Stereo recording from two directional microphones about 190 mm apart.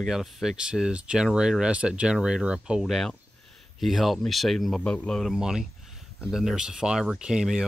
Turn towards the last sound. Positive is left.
turn(degrees=-5)  # may be behind; listen again after turning